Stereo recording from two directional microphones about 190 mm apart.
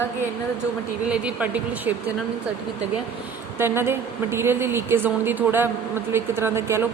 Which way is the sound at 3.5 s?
10° right (ahead or behind).